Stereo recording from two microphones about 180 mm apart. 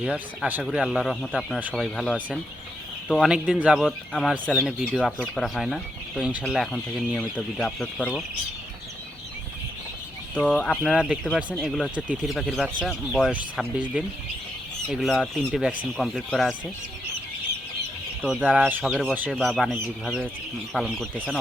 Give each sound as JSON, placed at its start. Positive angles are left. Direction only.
{"t": 0.0, "sound": "speech", "side_deg": -10}
{"t": 10.5, "sound": "speech", "side_deg": 5}
{"t": 18.2, "sound": "speech", "side_deg": -5}